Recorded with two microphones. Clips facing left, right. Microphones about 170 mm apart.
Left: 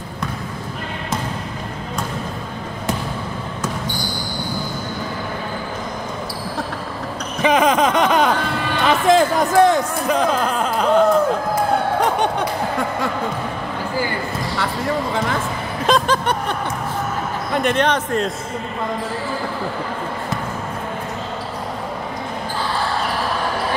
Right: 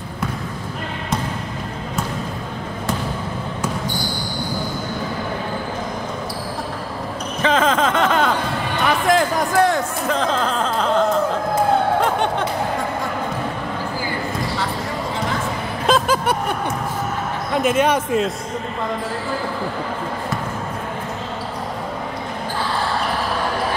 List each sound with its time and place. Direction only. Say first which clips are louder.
7.4 s a sound: left 2 dB; 15° left (ahead or behind)
12.0 s snicker: left 1 dB; 15° left (ahead or behind)
15.9 s vehicle: even; 10° right (ahead or behind)
17.5 s speech: right 1 dB; centre (ahead or behind)